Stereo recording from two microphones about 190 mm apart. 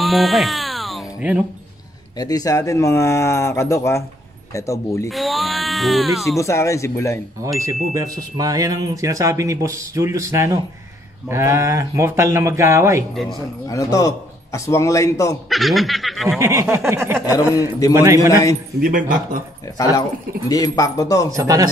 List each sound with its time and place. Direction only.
0.0 s music: centre (ahead or behind)
2.1 s speech: 20° left (ahead or behind)
5.1 s speech: centre (ahead or behind)
6.3 s speech: 15° left (ahead or behind)
7.4 s speech: 15° right (ahead or behind)
13.1 s speech: centre (ahead or behind)
13.7 s speech: 15° left (ahead or behind)
15.5 s speech: centre (ahead or behind)
16.3 s speech: 15° right (ahead or behind)
18.8 s speech: 45° right (ahead or behind)
19.8 s speech: 20° left (ahead or behind)
21.3 s speech: 15° right (ahead or behind)